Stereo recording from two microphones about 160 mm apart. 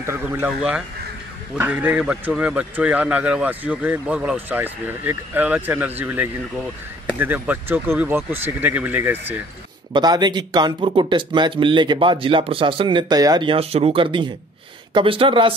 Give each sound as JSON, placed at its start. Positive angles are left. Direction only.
{"t": 0.0, "sound": "a man's voice", "side_deg": -15}
{"t": 9.9, "sound": "speech", "side_deg": -25}